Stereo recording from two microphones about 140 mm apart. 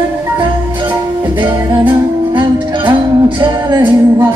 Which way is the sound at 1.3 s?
35° right (ahead or behind).